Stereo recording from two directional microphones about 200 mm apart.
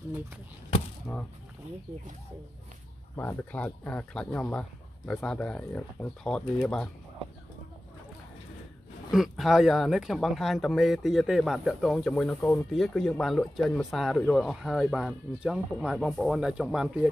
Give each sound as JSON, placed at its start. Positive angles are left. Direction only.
{"t": 3.2, "sound": "speech", "side_deg": 10}
{"t": 9.1, "sound": "speech", "side_deg": 0}